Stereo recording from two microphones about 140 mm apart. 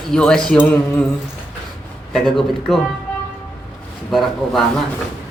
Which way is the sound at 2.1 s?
Centre (ahead or behind).